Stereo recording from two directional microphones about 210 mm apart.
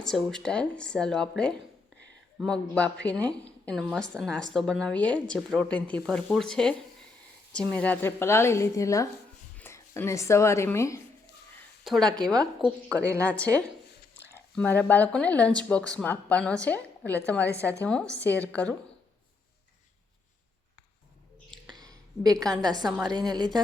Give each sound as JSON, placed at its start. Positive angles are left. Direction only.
{"t": 0.0, "sound": "speech", "side_deg": 5}
{"t": 11.9, "sound": "speech", "side_deg": 0}
{"t": 21.5, "sound": "a sound", "side_deg": -20}
{"t": 22.6, "sound": "a woman's voice", "side_deg": -20}